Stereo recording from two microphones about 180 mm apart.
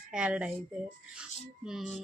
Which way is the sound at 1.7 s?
Centre (ahead or behind).